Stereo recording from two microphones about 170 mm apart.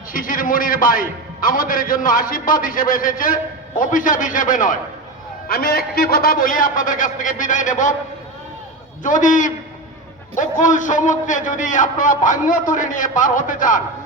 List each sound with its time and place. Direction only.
0.1 s a man's voice: 55° left (ahead or behind)
5.5 s a man's voice: 60° left (ahead or behind)
9.0 s a man's voice: 50° left (ahead or behind)